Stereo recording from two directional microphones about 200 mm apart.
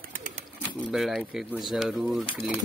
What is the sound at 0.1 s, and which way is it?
Bird, 40° right (ahead or behind).